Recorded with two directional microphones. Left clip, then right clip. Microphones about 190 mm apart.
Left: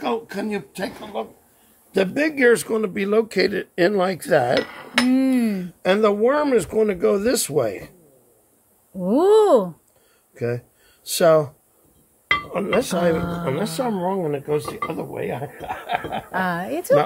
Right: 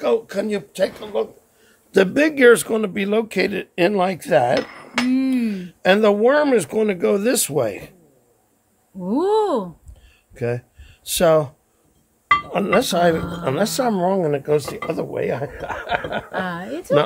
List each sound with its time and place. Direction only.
0.0 s speech: 40° right (ahead or behind); by 4.6 s 25° right (ahead or behind)
5.1 s speech: 20° left (ahead or behind)
5.8 s speech: 40° right (ahead or behind)
9.0 s speech: 20° left (ahead or behind)
10.3 s speech: 30° right (ahead or behind)
12.4 s speech: 50° right (ahead or behind)
16.3 s a woman's voice: 30° left (ahead or behind)